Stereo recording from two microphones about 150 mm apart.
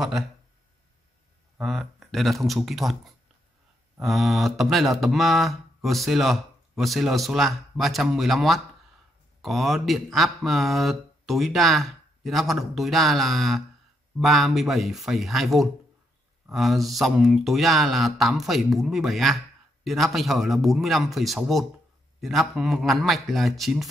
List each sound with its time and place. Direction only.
1.6 s speech: centre (ahead or behind)
4.0 s speech: centre (ahead or behind)